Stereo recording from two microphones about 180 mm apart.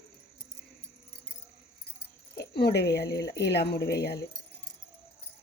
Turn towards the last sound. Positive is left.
turn(degrees=65)  # may be behind; listen again after turning